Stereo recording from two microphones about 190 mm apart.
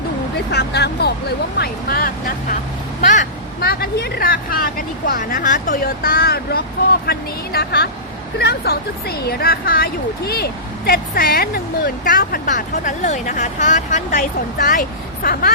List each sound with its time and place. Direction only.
0.3 s speech: 60° left (ahead or behind)